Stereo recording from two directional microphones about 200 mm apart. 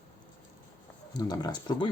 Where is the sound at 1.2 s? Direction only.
20° left (ahead or behind).